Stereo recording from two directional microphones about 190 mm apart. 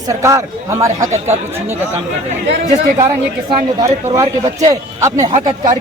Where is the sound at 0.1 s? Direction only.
15° right (ahead or behind).